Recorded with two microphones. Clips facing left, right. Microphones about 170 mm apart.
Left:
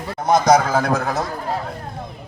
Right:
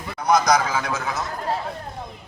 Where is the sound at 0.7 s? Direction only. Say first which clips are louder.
Left 7 dB; 40° left (ahead or behind).